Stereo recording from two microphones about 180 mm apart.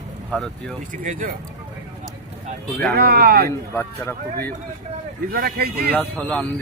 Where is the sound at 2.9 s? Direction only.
60° right (ahead or behind).